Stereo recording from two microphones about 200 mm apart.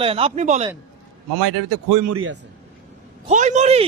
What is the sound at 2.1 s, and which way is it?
Speech, 80° right.